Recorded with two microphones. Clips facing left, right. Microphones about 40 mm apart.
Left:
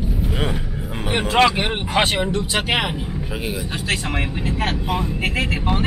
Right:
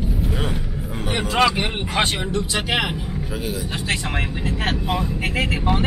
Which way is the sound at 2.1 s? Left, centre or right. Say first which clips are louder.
Left 3 dB; left.